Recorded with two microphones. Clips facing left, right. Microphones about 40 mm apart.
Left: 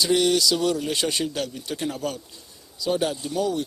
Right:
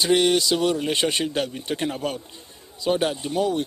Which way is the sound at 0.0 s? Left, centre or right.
Right.